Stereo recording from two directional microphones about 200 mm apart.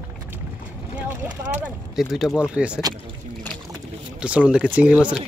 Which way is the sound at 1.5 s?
5° right (ahead or behind).